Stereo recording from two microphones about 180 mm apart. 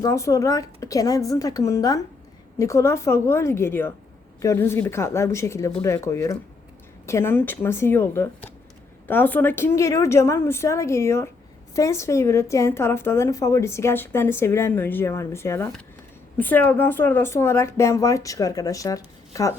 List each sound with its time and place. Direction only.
0.0 s a woman's voice: 15° left (ahead or behind)